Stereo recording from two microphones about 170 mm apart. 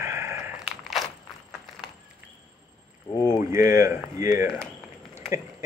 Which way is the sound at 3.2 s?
15° right (ahead or behind).